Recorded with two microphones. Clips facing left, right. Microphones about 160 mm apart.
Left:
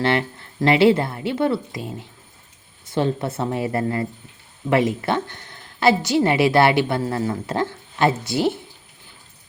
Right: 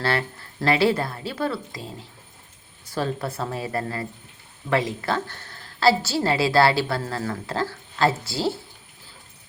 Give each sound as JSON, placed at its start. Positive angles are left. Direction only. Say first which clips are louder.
{"t": 0.0, "sound": "a woman's voice", "louder": "left 4 dB", "side_deg": 20}